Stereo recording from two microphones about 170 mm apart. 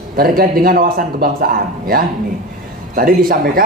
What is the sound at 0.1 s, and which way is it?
A man's voice, 60° right (ahead or behind).